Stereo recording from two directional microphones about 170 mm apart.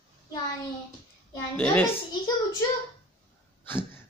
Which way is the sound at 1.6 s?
10° left (ahead or behind).